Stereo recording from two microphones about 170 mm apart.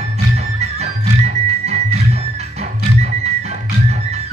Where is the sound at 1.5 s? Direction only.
40° right (ahead or behind).